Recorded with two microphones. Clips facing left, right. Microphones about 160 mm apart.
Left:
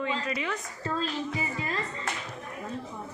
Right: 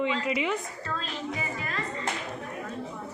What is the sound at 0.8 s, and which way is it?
Speech, 30° left (ahead or behind).